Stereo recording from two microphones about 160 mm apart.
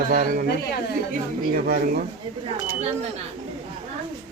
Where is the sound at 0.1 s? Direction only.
65° right (ahead or behind).